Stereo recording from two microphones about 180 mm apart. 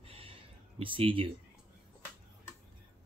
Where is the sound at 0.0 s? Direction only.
30° right (ahead or behind).